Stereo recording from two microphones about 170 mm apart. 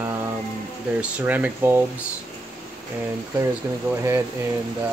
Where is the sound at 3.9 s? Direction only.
15° right (ahead or behind).